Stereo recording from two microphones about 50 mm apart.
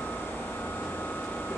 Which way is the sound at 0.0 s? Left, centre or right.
Left.